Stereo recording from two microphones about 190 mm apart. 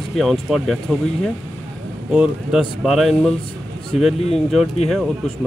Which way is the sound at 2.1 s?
5° right (ahead or behind).